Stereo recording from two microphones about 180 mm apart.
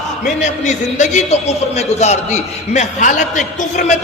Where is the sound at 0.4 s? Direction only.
40° left (ahead or behind).